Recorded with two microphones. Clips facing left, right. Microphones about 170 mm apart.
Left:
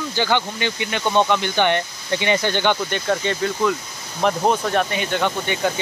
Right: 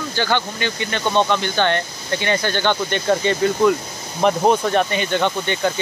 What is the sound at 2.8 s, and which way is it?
Speech, 5° left (ahead or behind).